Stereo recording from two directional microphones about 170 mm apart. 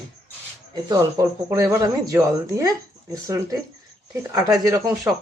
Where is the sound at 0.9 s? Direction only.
20° right (ahead or behind).